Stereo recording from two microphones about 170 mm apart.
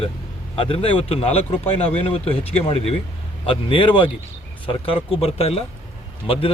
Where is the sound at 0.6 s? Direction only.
35° left (ahead or behind).